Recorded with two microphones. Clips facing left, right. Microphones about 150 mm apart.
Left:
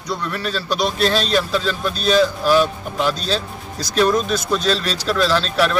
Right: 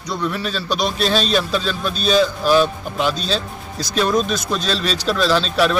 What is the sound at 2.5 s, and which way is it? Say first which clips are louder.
Speech: right 1 dB; 25° right (ahead or behind).